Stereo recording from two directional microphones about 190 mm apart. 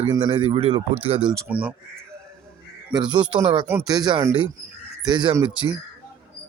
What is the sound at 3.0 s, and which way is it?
Speech, 25° right (ahead or behind).